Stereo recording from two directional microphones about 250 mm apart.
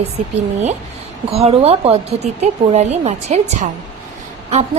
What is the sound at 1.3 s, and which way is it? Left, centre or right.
A woman's voice, right.